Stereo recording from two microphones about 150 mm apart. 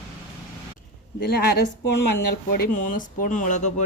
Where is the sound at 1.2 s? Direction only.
90° left.